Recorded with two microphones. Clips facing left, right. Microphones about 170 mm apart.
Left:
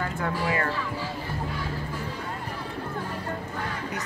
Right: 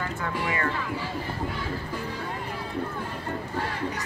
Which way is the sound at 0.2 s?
40° left (ahead or behind).